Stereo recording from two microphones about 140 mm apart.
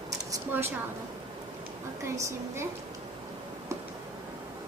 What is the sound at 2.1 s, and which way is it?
Speech, 20° right (ahead or behind).